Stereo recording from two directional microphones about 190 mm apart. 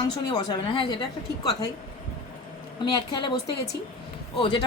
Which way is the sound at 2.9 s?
25° left (ahead or behind).